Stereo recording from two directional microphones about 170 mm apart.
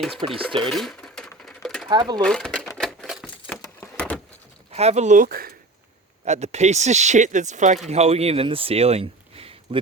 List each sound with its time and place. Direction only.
0.2 s speech: 35° right (ahead or behind)
0.6 s cash register: centre (ahead or behind)
1.9 s speech: 25° right (ahead or behind)
2.2 s typewriter: 5° left (ahead or behind)
3.5 s a sound: 10° left (ahead or behind)
4.7 s speech: 40° right (ahead or behind); by 5.5 s 60° right (ahead or behind)
6.2 s speech: 40° right (ahead or behind)